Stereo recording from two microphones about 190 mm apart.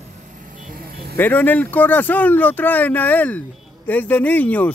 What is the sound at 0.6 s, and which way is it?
Vehicle, 50° right (ahead or behind).